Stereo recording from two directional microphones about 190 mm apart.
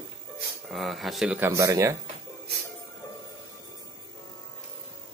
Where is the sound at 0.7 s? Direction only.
Centre (ahead or behind); by 2.0 s 15° right (ahead or behind).